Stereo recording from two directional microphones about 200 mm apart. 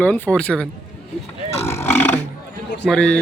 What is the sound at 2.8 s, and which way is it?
Speech, 5° left (ahead or behind).